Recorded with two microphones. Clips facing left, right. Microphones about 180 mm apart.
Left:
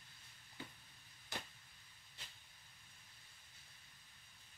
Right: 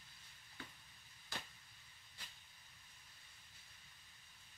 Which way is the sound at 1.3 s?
20° left (ahead or behind).